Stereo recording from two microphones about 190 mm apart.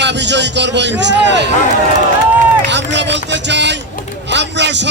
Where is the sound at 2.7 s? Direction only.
65° right (ahead or behind).